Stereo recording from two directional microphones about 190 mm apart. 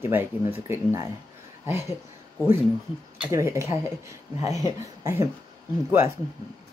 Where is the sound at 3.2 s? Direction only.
15° right (ahead or behind).